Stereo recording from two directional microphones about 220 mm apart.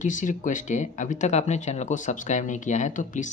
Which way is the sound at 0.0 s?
35° left (ahead or behind).